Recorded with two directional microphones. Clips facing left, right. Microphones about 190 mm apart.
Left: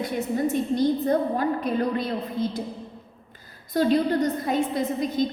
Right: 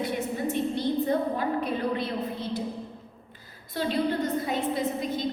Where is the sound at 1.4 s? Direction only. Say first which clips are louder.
Left 3 dB; 45° left (ahead or behind).